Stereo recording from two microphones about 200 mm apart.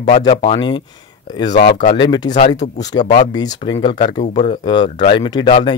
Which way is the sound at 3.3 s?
20° left (ahead or behind).